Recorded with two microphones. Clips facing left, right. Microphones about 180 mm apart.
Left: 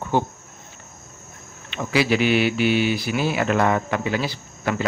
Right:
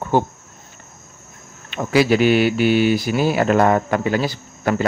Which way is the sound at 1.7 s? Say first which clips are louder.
Right 5 dB; 45° right (ahead or behind).